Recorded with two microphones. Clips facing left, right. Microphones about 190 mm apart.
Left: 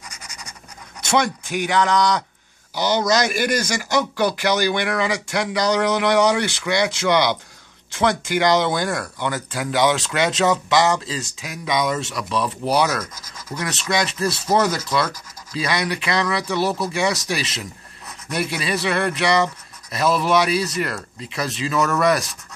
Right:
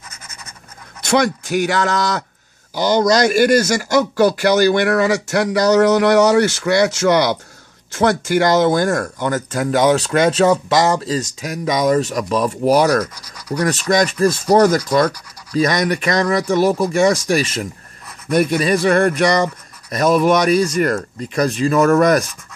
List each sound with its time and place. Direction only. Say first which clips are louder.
0.1 s scratch: even; 15° left (ahead or behind)
1.0 s speech: right 4 dB; 45° right (ahead or behind)